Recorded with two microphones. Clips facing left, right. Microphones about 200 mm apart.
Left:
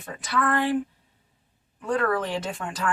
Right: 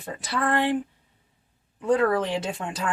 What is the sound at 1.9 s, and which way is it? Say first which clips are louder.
Speech: right 3 dB; 25° right (ahead or behind).